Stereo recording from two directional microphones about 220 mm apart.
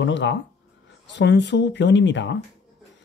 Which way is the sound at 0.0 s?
55° left (ahead or behind).